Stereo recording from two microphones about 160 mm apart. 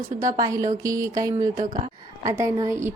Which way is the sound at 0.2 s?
25° right (ahead or behind).